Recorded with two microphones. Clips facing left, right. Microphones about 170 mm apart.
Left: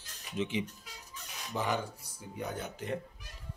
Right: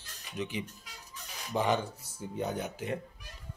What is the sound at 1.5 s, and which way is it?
Speech, 20° right (ahead or behind).